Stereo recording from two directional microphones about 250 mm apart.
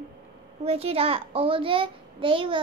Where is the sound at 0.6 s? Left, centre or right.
Right.